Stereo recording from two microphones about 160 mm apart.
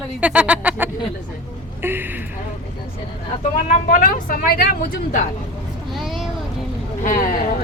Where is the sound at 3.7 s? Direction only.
55° left (ahead or behind).